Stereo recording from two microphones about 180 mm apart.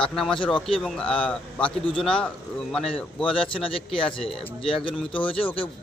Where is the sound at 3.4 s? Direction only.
30° left (ahead or behind).